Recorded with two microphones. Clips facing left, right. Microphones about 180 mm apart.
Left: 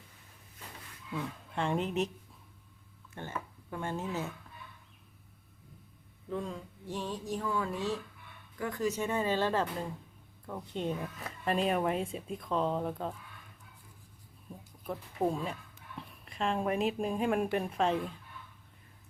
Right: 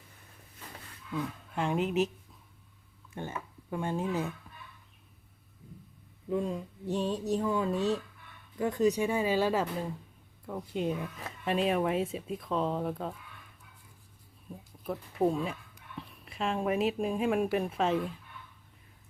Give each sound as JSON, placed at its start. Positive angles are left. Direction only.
{"t": 1.1, "sound": "speech", "side_deg": 0}
{"t": 3.2, "sound": "speech", "side_deg": -15}
{"t": 6.3, "sound": "speech", "side_deg": -15}
{"t": 14.8, "sound": "speech", "side_deg": 0}